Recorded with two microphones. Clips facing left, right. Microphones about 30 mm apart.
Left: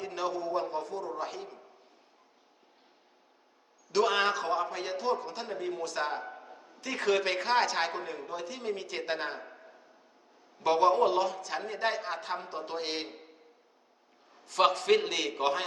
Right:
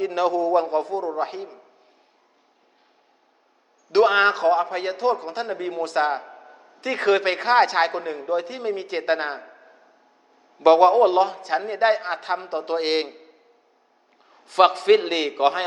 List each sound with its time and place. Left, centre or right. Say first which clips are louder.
0.0 s a man's voice: right 12 dB; right
3.9 s a man's voice: right 10 dB; right
6.4 s a sound: right 3 dB; right
6.7 s a man's voice: right 8 dB; right
9.5 s a sound: right 3 dB; centre
10.6 s a man's voice: right 10 dB; right
14.3 s a man's voice: right 9 dB; right